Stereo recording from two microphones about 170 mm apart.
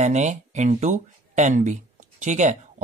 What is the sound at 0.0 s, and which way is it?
A man's voice, 40° right (ahead or behind).